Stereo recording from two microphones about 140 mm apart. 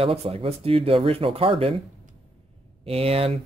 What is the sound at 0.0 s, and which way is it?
Speech, 45° right (ahead or behind).